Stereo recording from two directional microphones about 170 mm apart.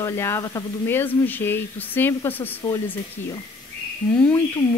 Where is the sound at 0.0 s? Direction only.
15° left (ahead or behind).